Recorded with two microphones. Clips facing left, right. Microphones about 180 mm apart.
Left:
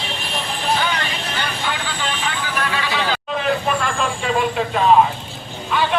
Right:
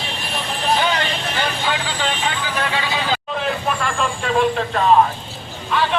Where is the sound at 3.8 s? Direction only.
Centre (ahead or behind).